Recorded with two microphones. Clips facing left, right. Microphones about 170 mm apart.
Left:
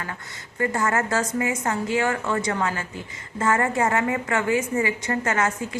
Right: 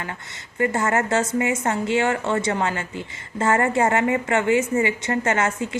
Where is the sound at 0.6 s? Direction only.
25° right (ahead or behind).